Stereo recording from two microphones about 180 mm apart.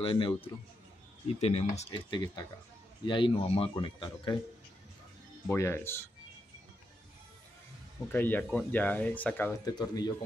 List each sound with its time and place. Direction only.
0.0 s speech: 30° left (ahead or behind)
5.5 s speech: 15° left (ahead or behind)
8.1 s speech: 10° left (ahead or behind)
9.7 s speech: 20° left (ahead or behind)